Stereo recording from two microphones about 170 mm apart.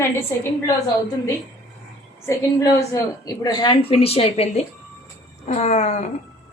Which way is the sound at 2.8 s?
20° left (ahead or behind).